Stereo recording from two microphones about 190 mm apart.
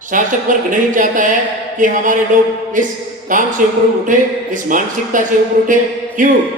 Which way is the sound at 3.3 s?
45° right (ahead or behind).